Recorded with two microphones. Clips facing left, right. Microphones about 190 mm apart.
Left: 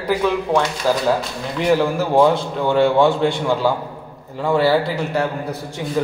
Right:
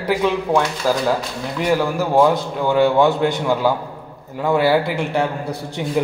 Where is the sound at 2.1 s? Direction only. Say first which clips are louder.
Even; 10° right (ahead or behind).